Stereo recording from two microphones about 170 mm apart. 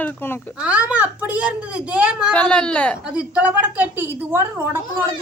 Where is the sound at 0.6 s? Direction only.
5° right (ahead or behind).